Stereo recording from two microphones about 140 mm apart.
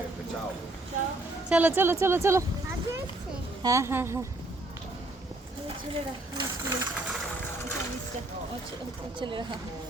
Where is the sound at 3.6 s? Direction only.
20° right (ahead or behind).